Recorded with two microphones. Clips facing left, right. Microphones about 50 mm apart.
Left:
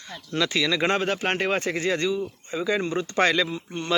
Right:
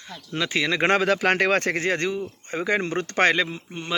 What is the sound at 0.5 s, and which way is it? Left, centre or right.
Speech, right.